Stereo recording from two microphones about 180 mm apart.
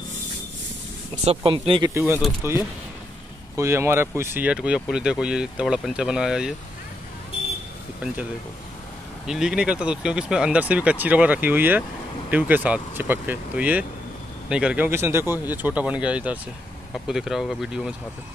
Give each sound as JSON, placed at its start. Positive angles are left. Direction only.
{"t": 1.2, "sound": "speech", "side_deg": -35}
{"t": 2.4, "sound": "speech", "side_deg": -15}
{"t": 9.2, "sound": "speech", "side_deg": -5}